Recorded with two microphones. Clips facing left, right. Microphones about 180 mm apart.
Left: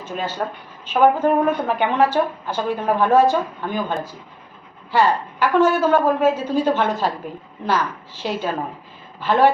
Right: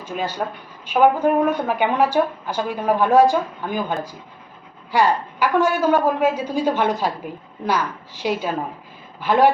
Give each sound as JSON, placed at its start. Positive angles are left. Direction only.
{"t": 0.0, "sound": "a woman's voice", "side_deg": -10}